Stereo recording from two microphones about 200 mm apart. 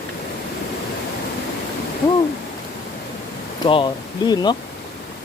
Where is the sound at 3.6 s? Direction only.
20° left (ahead or behind).